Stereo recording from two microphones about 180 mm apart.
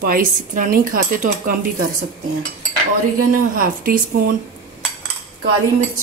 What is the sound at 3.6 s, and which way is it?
Speech, 50° right (ahead or behind).